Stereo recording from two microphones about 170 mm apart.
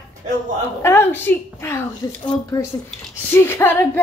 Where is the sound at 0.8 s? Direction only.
15° left (ahead or behind).